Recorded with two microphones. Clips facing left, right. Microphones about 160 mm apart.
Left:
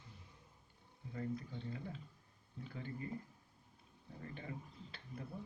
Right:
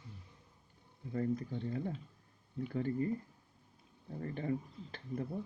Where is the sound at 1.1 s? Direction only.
45° right (ahead or behind).